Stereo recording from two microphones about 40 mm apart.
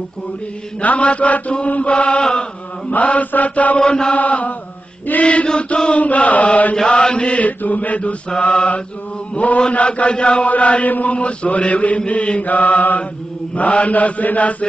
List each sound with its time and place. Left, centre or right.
0.7 s chant: left
3.8 s mantra: left
4.1 s chant: left
10.4 s chant: left